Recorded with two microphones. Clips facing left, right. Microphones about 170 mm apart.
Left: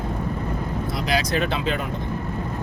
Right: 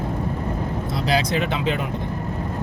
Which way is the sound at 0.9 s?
30° right (ahead or behind).